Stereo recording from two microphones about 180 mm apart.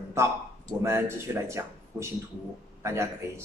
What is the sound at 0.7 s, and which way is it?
A man's voice, 15° right (ahead or behind).